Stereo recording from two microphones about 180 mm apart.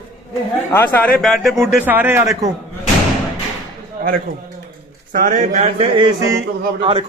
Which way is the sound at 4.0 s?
50° right (ahead or behind).